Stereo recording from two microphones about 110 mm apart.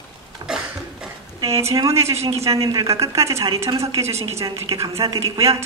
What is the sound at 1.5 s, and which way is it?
A woman's voice, 30° right (ahead or behind).